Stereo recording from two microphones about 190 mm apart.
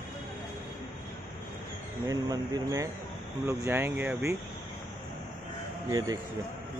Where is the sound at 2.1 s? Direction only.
20° right (ahead or behind).